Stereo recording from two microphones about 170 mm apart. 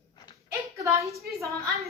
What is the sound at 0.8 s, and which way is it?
Speech, 20° right (ahead or behind).